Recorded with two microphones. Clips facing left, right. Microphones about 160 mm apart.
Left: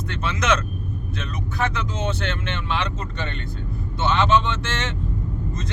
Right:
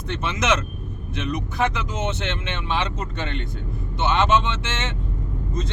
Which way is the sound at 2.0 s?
20° right (ahead or behind).